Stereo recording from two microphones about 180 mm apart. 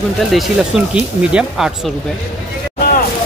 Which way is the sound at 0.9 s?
5° right (ahead or behind).